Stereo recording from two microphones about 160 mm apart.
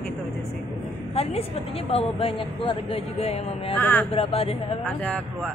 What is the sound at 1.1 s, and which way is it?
A woman's voice, 40° left (ahead or behind).